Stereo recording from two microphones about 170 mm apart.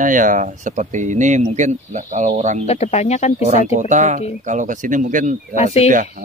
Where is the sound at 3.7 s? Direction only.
45° right (ahead or behind).